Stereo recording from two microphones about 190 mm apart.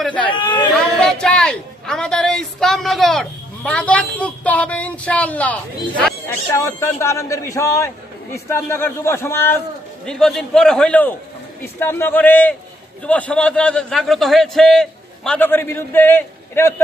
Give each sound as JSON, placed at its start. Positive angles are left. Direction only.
{"t": 0.0, "sound": "speech", "side_deg": 5}
{"t": 0.3, "sound": "speech", "side_deg": 25}
{"t": 1.0, "sound": "a woman's voice", "side_deg": 5}